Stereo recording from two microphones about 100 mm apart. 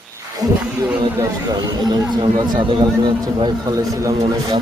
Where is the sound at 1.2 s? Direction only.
40° right (ahead or behind).